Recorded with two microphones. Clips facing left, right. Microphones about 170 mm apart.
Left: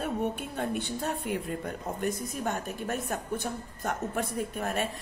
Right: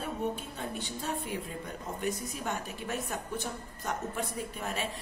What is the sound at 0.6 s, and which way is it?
A woman's voice, 55° left (ahead or behind).